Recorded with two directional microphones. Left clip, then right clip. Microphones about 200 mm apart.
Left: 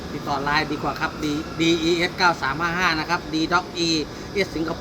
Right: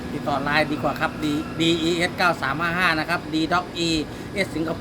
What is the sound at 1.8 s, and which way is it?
Speech, 25° right (ahead or behind).